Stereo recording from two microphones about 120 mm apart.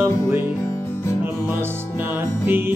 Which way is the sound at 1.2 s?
15° right (ahead or behind).